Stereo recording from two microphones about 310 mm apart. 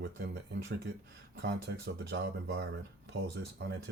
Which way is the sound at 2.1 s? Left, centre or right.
Right.